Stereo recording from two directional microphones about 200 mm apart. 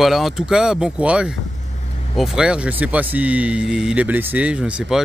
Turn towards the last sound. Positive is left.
turn(degrees=-5)  # may be behind; listen again after turning